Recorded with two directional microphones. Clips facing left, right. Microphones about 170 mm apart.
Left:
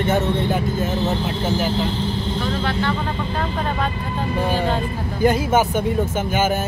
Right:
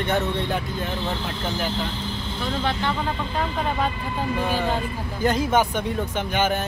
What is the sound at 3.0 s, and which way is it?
Speech, 5° right (ahead or behind).